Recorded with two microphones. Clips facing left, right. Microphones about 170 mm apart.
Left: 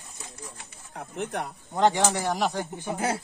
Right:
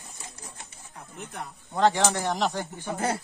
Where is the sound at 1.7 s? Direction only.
15° left (ahead or behind).